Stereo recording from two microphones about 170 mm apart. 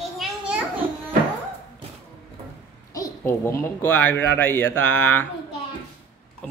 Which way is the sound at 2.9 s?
15° left (ahead or behind).